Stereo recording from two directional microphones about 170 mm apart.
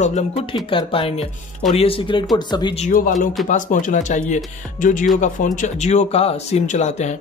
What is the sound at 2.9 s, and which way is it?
Speech, 55° left (ahead or behind).